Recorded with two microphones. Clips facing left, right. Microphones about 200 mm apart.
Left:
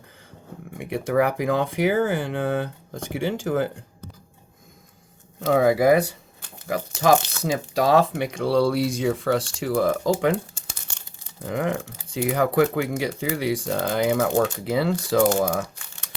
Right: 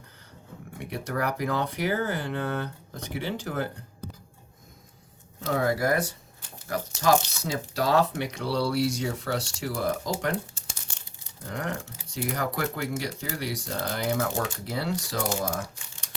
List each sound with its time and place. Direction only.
1.0 s speech: 50° left (ahead or behind)
5.4 s speech: 65° left (ahead or behind)